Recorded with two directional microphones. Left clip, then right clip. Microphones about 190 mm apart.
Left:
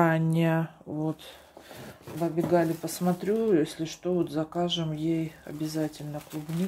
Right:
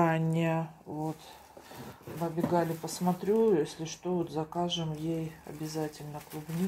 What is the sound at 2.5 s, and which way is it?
Speech, 35° left (ahead or behind).